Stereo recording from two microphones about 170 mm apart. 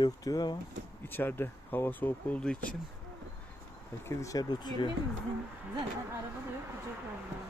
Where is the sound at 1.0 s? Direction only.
10° left (ahead or behind).